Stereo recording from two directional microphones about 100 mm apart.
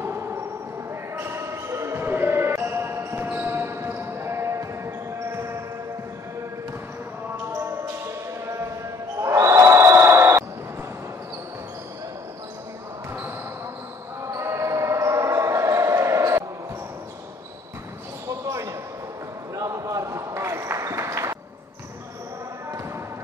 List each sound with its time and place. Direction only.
0.0 s a sound: 25° right (ahead or behind)
1.1 s basketball bounce: 25° right (ahead or behind)
7.5 s basketball bounce: 25° right (ahead or behind)
14.2 s basketball bounce: 30° right (ahead or behind)
18.5 s basketball bounce: 30° right (ahead or behind)
19.5 s a sound: 35° right (ahead or behind)